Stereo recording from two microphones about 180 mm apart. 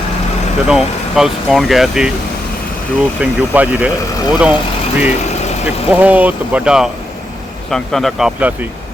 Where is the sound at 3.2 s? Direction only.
10° right (ahead or behind).